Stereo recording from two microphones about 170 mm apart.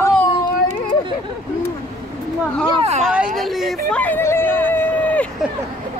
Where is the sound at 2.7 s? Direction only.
40° right (ahead or behind).